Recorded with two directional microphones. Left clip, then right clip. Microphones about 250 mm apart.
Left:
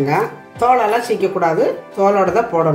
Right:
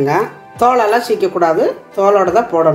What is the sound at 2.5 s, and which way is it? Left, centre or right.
Speech, right.